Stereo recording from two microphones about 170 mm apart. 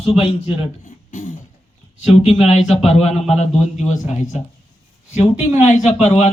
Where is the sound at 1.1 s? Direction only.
50° left (ahead or behind).